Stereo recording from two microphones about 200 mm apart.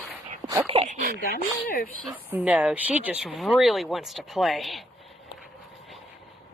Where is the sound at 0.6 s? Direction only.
35° right (ahead or behind).